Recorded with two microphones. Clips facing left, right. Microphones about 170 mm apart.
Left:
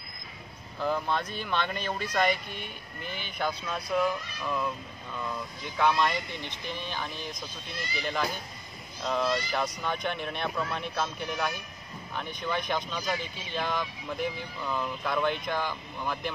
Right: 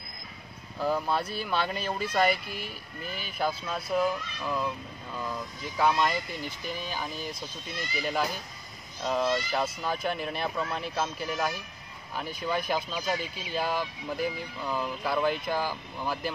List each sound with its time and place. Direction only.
0.7 s speech: 5° right (ahead or behind)
5.8 s speech: 5° right (ahead or behind)